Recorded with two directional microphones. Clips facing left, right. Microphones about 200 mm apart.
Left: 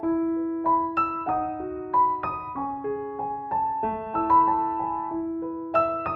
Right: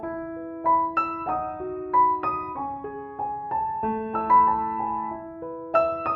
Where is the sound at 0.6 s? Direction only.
Centre (ahead or behind).